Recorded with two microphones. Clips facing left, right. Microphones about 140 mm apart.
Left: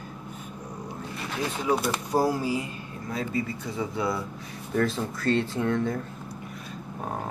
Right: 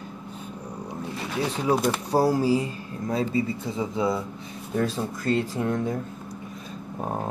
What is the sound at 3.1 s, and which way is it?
Speech, 25° right (ahead or behind).